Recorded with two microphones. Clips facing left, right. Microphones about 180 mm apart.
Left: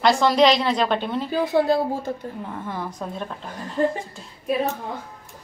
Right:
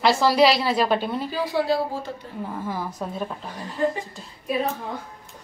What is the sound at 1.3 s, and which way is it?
Speech, 50° left (ahead or behind).